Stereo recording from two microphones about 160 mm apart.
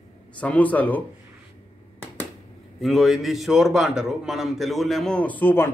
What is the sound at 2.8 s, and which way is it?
A man's voice, centre (ahead or behind).